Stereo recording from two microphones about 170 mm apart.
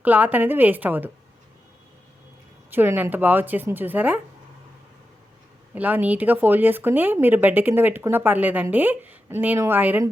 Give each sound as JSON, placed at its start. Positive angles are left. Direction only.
{"t": 0.0, "sound": "speech", "side_deg": -10}
{"t": 2.6, "sound": "speech", "side_deg": -10}
{"t": 5.7, "sound": "speech", "side_deg": -10}